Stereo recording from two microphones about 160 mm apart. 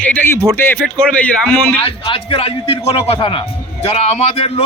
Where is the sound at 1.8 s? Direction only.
35° left (ahead or behind).